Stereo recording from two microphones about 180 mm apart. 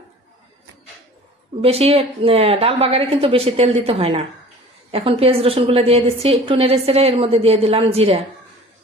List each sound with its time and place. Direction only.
1.6 s a woman's voice: 35° right (ahead or behind)